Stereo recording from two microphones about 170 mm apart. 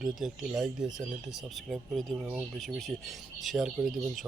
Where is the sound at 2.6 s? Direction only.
Centre (ahead or behind).